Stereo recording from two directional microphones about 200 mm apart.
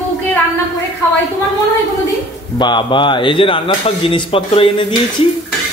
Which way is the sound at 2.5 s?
25° left (ahead or behind).